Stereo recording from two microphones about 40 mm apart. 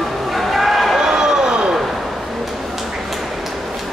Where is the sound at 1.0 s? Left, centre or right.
Centre.